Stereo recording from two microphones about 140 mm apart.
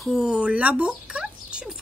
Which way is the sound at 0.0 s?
Centre (ahead or behind).